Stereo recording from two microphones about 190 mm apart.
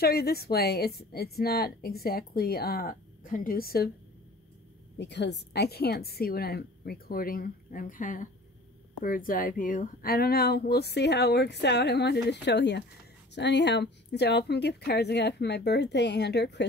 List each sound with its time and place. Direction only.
0.0 s a woman's voice: 55° left (ahead or behind)
4.9 s speech: 65° left (ahead or behind)